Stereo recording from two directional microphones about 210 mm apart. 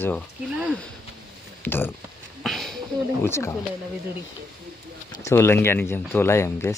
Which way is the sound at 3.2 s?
10° left (ahead or behind).